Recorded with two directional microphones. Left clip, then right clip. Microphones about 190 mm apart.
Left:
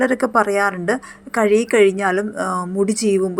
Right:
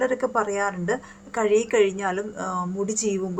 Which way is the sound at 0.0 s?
30° left (ahead or behind).